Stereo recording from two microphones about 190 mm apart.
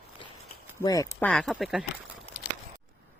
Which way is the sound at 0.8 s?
20° left (ahead or behind).